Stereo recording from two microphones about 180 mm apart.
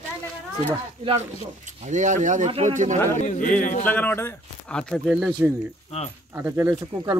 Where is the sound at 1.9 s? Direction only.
45° right (ahead or behind).